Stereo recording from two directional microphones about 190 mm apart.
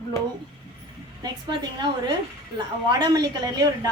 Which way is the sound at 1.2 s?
25° right (ahead or behind).